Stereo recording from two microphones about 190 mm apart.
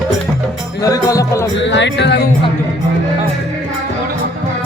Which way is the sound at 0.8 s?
20° left (ahead or behind).